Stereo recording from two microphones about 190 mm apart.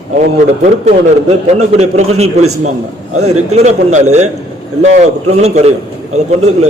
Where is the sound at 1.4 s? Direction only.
35° right (ahead or behind).